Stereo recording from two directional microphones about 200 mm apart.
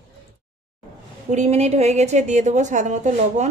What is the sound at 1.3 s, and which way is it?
Speech, 35° right (ahead or behind).